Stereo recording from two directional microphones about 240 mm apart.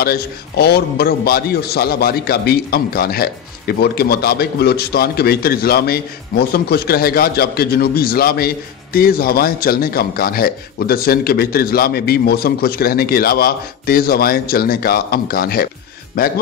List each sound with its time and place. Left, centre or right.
0.0 s a man's voice: left